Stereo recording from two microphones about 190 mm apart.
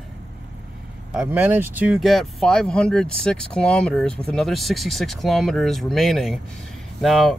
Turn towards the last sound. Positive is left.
turn(degrees=0)  # may be behind; listen again after turning